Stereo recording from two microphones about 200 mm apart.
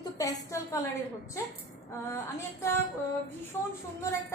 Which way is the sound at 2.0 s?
15° left (ahead or behind).